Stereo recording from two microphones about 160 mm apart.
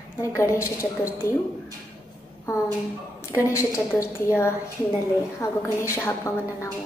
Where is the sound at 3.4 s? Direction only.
20° left (ahead or behind).